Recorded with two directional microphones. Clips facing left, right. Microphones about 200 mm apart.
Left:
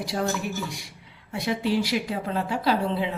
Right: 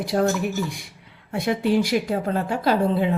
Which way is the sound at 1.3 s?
55° right (ahead or behind).